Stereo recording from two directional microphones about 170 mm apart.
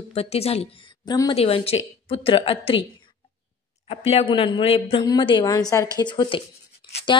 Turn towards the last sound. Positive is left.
turn(degrees=30)  # may be behind; listen again after turning